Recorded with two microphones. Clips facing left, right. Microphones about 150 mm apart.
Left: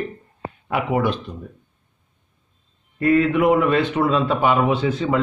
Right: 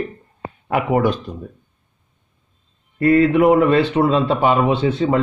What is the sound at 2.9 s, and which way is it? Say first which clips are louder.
Speech: right 3 dB; 35° right (ahead or behind).